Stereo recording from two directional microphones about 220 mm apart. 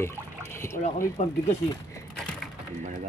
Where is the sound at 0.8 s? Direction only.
30° left (ahead or behind).